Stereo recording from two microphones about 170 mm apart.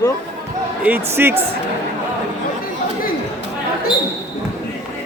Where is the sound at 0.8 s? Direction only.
10° right (ahead or behind).